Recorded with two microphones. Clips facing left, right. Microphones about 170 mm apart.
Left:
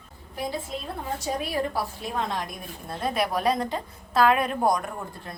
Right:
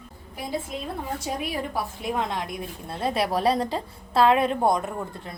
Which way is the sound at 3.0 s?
30° right (ahead or behind).